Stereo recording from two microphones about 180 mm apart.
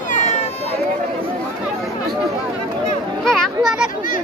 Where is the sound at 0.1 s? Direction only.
40° left (ahead or behind).